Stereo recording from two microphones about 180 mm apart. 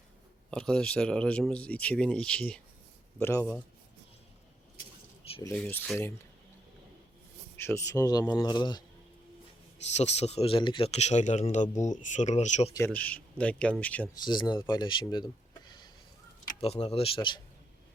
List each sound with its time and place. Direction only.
0.5 s speech: 5° left (ahead or behind)
5.5 s speech: 5° left (ahead or behind)
7.5 s speech: 10° left (ahead or behind)
9.9 s speech: 40° left (ahead or behind)
12.7 s speech: 10° left (ahead or behind)
14.2 s speech: 25° left (ahead or behind)
15.6 s a sound: 25° left (ahead or behind)
16.6 s speech: 35° left (ahead or behind)